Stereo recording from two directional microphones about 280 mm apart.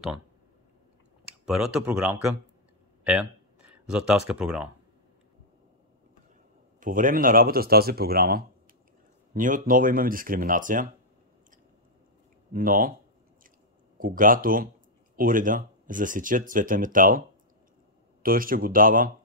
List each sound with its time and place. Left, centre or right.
1.4 s speech: centre
3.0 s a sound: centre
3.8 s speech: centre
6.8 s speech: right
12.5 s speech: right
13.9 s speech: right
18.2 s speech: right